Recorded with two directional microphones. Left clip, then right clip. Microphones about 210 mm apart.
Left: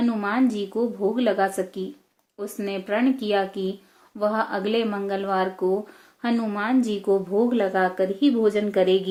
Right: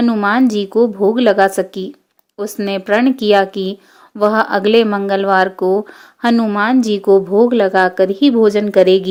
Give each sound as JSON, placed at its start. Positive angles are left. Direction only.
{"t": 0.0, "sound": "a woman's voice", "side_deg": -45}